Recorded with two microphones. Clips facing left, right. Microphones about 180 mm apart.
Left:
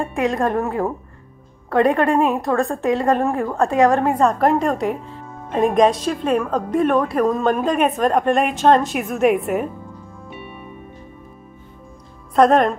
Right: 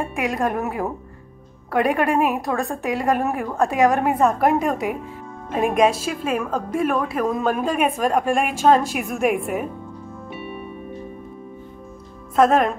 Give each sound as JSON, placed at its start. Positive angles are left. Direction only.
{"t": 0.2, "sound": "a woman's voice", "side_deg": -15}
{"t": 1.9, "sound": "a woman's voice", "side_deg": -15}
{"t": 12.4, "sound": "a woman's voice", "side_deg": -5}